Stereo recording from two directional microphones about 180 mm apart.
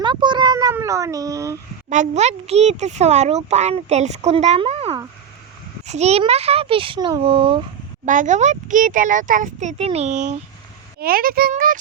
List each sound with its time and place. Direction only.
0.0 s a sound: 25° right (ahead or behind)
1.9 s speech: 40° right (ahead or behind)
8.0 s a child's voice: 45° right (ahead or behind)
11.0 s a child's voice: 55° right (ahead or behind)